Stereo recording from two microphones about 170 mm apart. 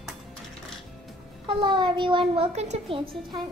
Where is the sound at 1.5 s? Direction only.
30° right (ahead or behind).